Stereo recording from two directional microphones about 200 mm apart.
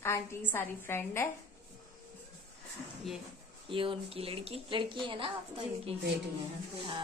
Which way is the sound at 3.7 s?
25° right (ahead or behind).